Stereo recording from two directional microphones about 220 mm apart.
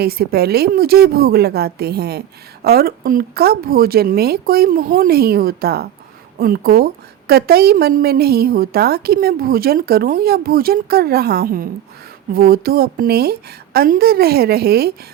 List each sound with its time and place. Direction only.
0.0 s a woman's voice: 45° right (ahead or behind)